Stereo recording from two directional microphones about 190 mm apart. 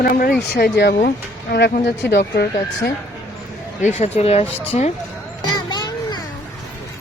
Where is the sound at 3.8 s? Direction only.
35° left (ahead or behind).